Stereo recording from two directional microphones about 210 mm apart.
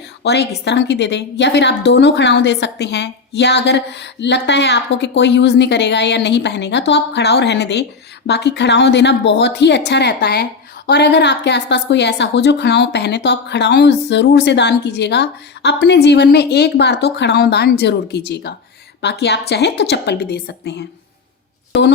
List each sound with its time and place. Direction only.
0.2 s a woman's voice: 55° left (ahead or behind)